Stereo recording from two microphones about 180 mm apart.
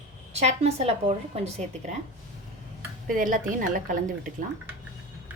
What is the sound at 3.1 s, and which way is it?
A woman's voice, 50° right (ahead or behind).